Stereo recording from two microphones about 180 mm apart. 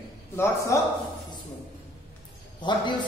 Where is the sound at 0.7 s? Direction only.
15° left (ahead or behind).